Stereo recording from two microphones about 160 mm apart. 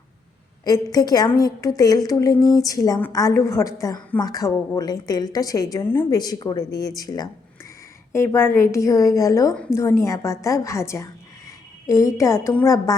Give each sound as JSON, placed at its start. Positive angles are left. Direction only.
{"t": 0.6, "sound": "a woman's voice", "side_deg": 25}
{"t": 6.1, "sound": "a woman's voice", "side_deg": 25}